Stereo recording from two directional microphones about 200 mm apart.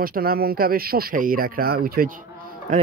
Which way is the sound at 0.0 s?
45° right (ahead or behind).